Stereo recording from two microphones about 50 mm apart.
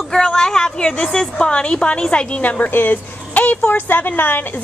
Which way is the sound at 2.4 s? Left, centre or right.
Left.